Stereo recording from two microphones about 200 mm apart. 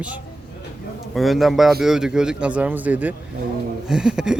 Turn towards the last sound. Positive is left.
turn(degrees=-5)  # may be behind; listen again after turning